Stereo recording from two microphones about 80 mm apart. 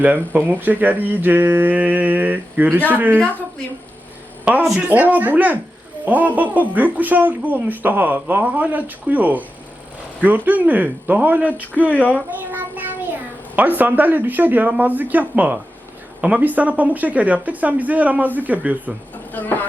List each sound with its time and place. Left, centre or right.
0.0 s speech: right
4.5 s speech: centre
11.9 s speech: centre
12.1 s child singing: right
13.6 s speech: right
19.3 s speech: left